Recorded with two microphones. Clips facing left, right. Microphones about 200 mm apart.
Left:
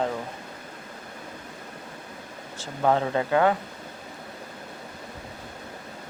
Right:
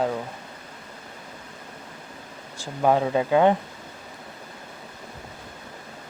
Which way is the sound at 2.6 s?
10° right (ahead or behind).